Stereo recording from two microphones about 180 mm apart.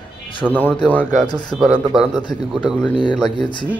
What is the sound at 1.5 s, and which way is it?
A man's voice, 5° right (ahead or behind).